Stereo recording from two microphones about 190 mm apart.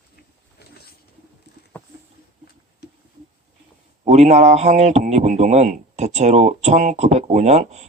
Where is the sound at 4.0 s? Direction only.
35° right (ahead or behind).